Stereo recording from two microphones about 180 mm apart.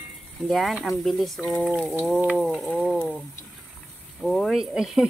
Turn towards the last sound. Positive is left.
turn(degrees=0)  # may be behind; listen again after turning